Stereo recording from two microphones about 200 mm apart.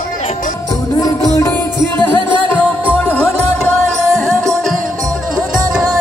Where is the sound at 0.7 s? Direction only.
20° left (ahead or behind); by 4.7 s centre (ahead or behind).